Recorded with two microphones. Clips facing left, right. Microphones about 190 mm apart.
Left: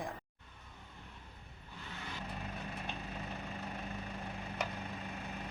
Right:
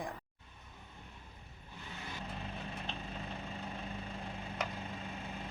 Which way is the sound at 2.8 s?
10° left (ahead or behind).